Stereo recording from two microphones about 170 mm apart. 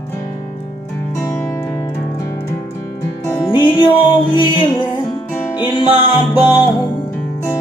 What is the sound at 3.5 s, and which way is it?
Music, 30° left (ahead or behind).